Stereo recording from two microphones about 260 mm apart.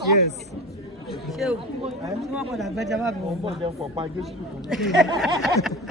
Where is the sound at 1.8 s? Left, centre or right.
Centre.